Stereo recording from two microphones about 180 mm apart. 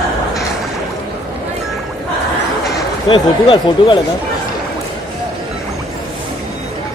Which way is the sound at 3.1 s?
30° left (ahead or behind).